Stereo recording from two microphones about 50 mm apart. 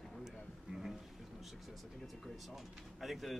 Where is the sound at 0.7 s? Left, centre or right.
Centre.